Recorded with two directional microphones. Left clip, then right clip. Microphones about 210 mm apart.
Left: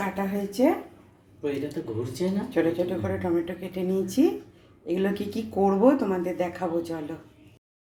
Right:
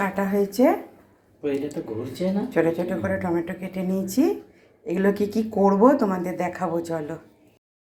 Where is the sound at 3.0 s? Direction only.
10° right (ahead or behind).